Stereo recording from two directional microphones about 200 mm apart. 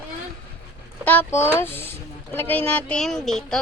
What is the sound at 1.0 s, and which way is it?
Speech, 10° left (ahead or behind).